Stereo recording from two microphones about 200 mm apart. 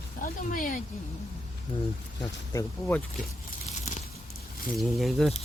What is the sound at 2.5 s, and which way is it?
Speech, 10° left (ahead or behind).